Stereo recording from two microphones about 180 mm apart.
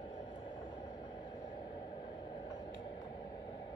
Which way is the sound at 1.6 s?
25° left (ahead or behind).